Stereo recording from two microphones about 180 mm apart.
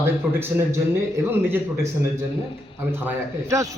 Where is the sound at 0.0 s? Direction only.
10° right (ahead or behind).